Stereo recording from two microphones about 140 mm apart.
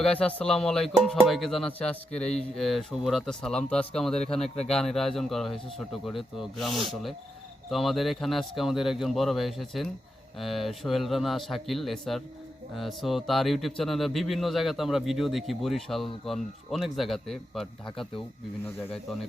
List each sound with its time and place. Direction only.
0.1 s speech: 10° left (ahead or behind)
4.4 s speech: 50° left (ahead or behind)
4.7 s speech: 5° left (ahead or behind)